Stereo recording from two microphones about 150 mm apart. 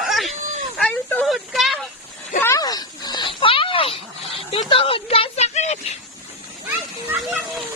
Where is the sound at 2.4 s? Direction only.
25° left (ahead or behind); by 5.7 s 50° left (ahead or behind).